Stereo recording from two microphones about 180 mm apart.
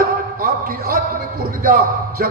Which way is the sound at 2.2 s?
55° right (ahead or behind).